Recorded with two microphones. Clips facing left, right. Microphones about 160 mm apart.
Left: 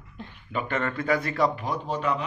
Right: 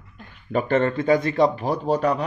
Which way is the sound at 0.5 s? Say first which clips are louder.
Right 8 dB; 35° right (ahead or behind).